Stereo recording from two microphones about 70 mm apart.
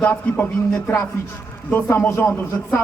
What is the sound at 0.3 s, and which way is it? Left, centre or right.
Speech, left.